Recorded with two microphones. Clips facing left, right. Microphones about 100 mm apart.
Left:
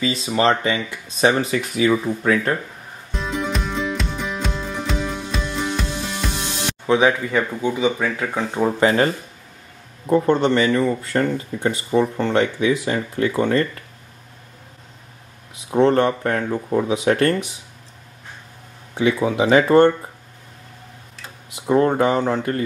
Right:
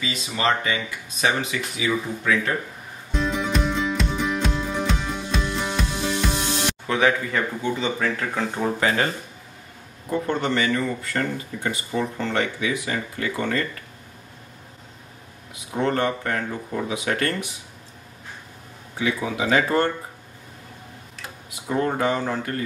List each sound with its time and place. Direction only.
0.0 s speech: 35° left (ahead or behind)
3.1 s music: centre (ahead or behind)
6.9 s speech: 20° left (ahead or behind)
8.7 s speech: 30° left (ahead or behind)
15.7 s speech: 30° left (ahead or behind)
18.9 s speech: 30° left (ahead or behind)
21.6 s speech: 30° left (ahead or behind)